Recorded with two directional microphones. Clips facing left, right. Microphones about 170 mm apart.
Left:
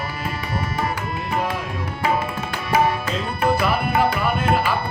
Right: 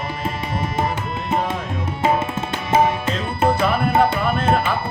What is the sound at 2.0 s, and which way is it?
Tabla, 25° right (ahead or behind).